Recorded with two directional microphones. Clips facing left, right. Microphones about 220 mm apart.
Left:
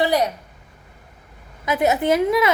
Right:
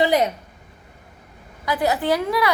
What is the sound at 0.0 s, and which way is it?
Speech, 20° right (ahead or behind).